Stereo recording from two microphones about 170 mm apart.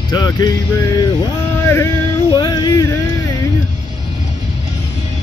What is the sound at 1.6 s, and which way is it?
Music, 15° left (ahead or behind).